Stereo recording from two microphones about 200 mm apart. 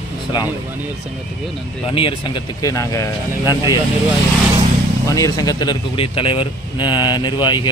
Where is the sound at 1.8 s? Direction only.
25° left (ahead or behind).